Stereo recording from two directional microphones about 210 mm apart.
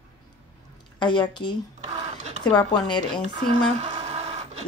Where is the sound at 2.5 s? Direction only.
20° left (ahead or behind).